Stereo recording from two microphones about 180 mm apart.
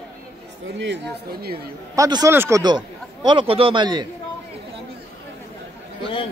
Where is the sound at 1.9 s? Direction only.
20° right (ahead or behind).